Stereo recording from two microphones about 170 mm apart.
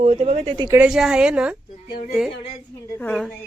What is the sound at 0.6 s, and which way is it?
Speech, 15° right (ahead or behind).